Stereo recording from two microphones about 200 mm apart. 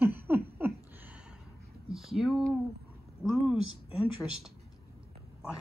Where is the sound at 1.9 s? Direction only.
Centre (ahead or behind).